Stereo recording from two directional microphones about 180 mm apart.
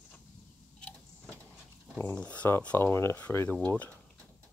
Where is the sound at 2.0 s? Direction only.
10° left (ahead or behind).